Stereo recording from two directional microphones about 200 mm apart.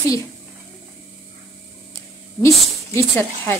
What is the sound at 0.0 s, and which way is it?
Speech, 15° left (ahead or behind).